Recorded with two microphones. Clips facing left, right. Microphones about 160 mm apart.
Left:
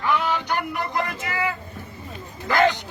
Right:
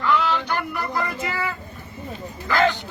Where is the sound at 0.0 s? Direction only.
15° left (ahead or behind).